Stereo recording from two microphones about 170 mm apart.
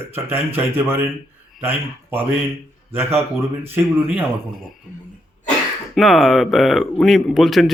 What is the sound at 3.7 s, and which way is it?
Speech, 10° right (ahead or behind).